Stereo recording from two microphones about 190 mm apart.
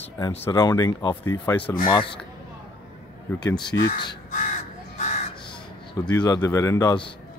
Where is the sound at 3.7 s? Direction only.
60° left (ahead or behind).